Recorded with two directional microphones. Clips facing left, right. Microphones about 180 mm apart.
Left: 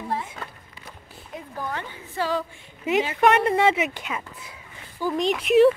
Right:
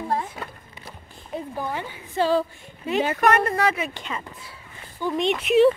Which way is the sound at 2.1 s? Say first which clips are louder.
Right 5 dB; 30° right (ahead or behind).